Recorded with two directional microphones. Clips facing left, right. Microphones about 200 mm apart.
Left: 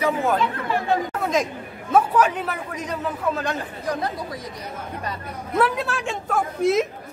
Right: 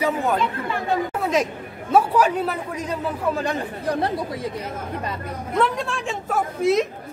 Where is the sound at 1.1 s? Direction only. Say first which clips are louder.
Right 1 dB; 5° right (ahead or behind).